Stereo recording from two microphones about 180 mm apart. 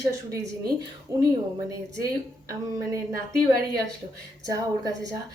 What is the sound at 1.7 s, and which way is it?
Speech, 15° right (ahead or behind).